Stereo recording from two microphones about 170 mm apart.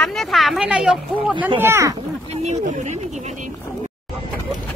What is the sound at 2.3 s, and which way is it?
Speech, 40° right (ahead or behind).